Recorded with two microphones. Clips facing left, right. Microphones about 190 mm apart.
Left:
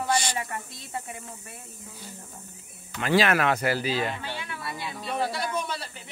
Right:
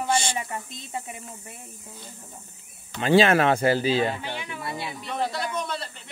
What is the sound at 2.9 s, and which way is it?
Speech, 25° right (ahead or behind).